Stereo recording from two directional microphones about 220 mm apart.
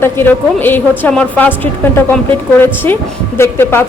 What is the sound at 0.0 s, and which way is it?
A woman's voice, 10° left (ahead or behind).